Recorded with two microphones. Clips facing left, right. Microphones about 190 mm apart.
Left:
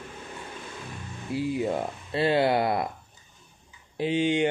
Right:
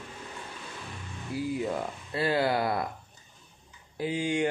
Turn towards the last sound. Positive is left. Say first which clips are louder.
# left 4 dB
turn(degrees=20)  # may be behind; listen again after turning